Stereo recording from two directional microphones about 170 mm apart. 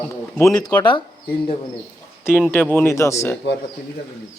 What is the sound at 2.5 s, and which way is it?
Speech, 10° left (ahead or behind).